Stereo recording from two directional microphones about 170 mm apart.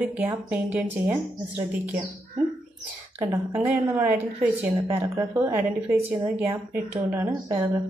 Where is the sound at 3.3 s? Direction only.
10° right (ahead or behind).